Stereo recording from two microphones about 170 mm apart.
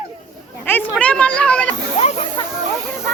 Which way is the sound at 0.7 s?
10° left (ahead or behind).